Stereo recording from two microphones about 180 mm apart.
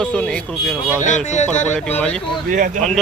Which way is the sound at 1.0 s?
40° left (ahead or behind).